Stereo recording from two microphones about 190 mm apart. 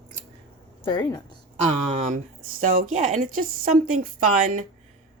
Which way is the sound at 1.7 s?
40° right (ahead or behind).